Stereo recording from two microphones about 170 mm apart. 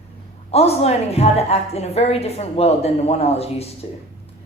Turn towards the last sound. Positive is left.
turn(degrees=35)  # may be behind; listen again after turning